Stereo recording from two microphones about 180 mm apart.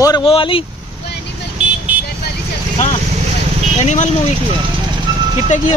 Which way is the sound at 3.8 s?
40° left (ahead or behind).